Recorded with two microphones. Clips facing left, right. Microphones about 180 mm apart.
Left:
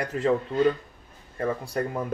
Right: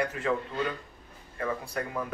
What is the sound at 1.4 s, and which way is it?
Speech, 35° left (ahead or behind).